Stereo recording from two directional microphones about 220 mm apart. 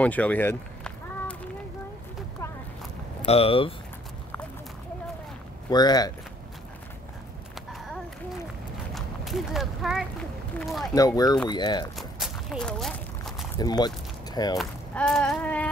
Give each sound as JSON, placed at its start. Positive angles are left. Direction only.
{"t": 0.0, "sound": "run", "side_deg": 5}
{"t": 3.3, "sound": "speech", "side_deg": 25}
{"t": 5.7, "sound": "speech", "side_deg": 20}
{"t": 8.9, "sound": "a sound", "side_deg": 0}
{"t": 10.6, "sound": "speech", "side_deg": 0}
{"t": 11.0, "sound": "speech", "side_deg": 15}
{"t": 12.0, "sound": "walk", "side_deg": 0}
{"t": 13.6, "sound": "speech", "side_deg": 20}
{"t": 14.6, "sound": "speech", "side_deg": 0}